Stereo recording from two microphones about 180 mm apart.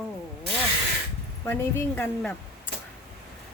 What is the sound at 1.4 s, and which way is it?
Speech, 10° left (ahead or behind).